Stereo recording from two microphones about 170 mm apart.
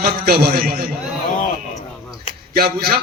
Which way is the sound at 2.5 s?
65° right (ahead or behind).